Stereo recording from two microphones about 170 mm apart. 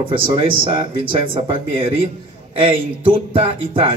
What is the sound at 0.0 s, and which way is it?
Speech, 30° right (ahead or behind).